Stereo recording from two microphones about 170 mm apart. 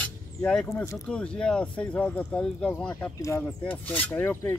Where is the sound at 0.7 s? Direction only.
15° left (ahead or behind).